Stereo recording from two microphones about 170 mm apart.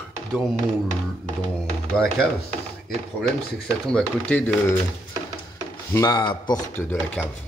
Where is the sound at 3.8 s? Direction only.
5° left (ahead or behind).